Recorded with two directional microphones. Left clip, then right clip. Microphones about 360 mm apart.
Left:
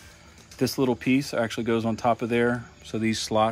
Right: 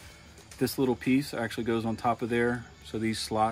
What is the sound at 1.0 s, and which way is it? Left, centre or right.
Speech, left.